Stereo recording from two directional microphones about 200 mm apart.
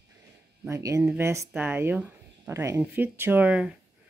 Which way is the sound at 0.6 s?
15° right (ahead or behind).